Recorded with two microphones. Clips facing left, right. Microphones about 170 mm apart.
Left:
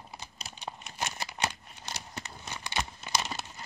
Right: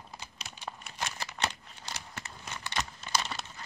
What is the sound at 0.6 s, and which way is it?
Crumpling, 20° left (ahead or behind).